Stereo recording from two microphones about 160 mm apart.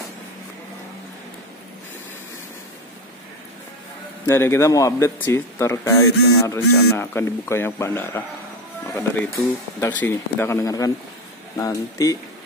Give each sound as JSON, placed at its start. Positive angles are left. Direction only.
{"t": 4.3, "sound": "speech", "side_deg": 15}
{"t": 9.2, "sound": "speech", "side_deg": 10}